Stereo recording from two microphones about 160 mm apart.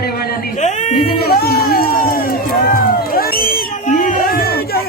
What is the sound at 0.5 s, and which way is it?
Speech, 45° left (ahead or behind).